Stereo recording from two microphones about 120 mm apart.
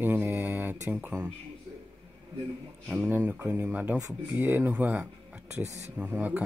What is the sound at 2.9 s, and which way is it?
Speech, 15° right (ahead or behind).